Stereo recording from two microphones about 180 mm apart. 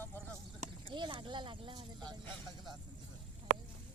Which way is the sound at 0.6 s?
30° right (ahead or behind).